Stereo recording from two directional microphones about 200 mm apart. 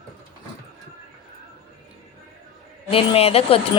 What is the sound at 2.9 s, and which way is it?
Speech, 30° left (ahead or behind).